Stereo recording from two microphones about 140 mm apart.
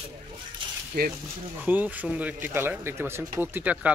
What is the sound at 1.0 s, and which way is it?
Speech, 90° right.